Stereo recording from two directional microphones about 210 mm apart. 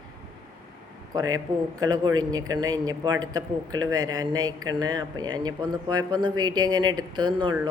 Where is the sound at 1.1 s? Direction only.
20° right (ahead or behind).